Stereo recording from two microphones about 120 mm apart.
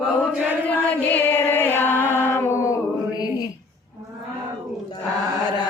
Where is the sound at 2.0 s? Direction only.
20° right (ahead or behind).